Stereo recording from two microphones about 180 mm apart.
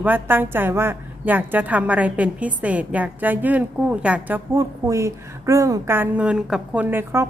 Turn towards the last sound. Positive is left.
turn(degrees=-15)  # may be behind; listen again after turning